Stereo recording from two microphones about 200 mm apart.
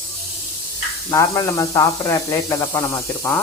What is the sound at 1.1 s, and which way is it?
Speech, 15° left (ahead or behind).